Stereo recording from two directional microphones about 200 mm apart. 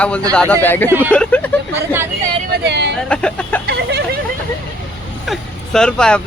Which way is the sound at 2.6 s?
60° right (ahead or behind).